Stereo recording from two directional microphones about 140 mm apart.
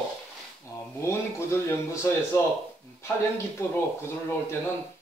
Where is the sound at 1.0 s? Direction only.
20° left (ahead or behind).